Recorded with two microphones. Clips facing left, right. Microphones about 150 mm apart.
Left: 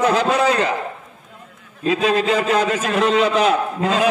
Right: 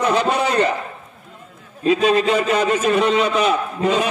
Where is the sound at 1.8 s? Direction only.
90° left.